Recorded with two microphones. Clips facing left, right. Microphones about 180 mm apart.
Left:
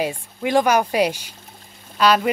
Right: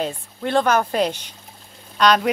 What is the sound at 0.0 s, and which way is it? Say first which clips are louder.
Speech: left 2 dB; 10° left (ahead or behind).